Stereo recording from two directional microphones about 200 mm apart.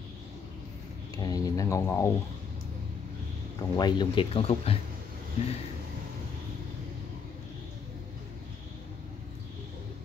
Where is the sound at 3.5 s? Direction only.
20° left (ahead or behind).